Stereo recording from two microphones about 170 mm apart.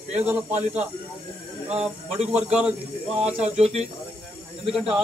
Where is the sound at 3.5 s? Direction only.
40° right (ahead or behind).